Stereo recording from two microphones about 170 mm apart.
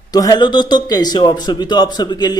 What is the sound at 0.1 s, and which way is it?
Speech, 25° left (ahead or behind).